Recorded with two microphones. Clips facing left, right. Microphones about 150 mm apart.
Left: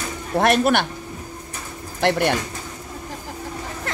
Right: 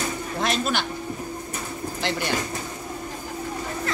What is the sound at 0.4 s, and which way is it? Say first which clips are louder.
Speech: left 8 dB; 60° left (ahead or behind).